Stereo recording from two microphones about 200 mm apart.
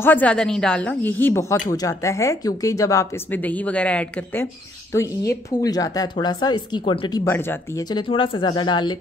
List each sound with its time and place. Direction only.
0.0 s a woman's voice: 10° left (ahead or behind)
8.1 s speech: 25° left (ahead or behind)